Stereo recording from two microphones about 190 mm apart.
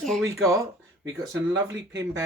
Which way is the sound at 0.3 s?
15° right (ahead or behind).